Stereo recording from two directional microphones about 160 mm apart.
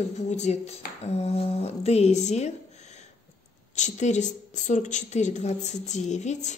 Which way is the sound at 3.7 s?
50° left (ahead or behind).